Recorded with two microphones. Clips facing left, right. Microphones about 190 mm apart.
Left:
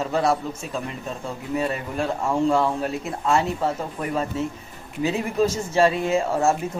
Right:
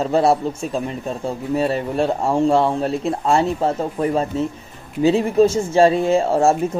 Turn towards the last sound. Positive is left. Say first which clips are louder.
# right 5 dB
turn(degrees=-30)  # may be behind; listen again after turning